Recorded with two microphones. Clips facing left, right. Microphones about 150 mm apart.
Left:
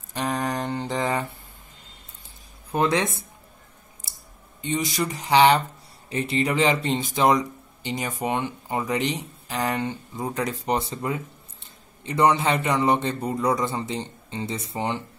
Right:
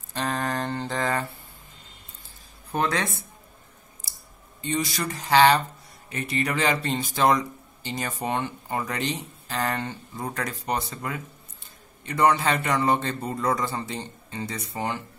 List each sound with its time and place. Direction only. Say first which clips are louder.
0.1 s mantra: left 1 dB; 15° left (ahead or behind)
2.9 s speech: left 4 dB; 20° left (ahead or behind)
4.1 s a sound: left 2 dB; 25° left (ahead or behind)
4.6 s speech: left 2 dB; 20° left (ahead or behind)